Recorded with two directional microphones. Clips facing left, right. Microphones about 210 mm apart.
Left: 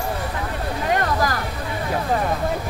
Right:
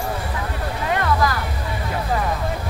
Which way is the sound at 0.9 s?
40° left (ahead or behind).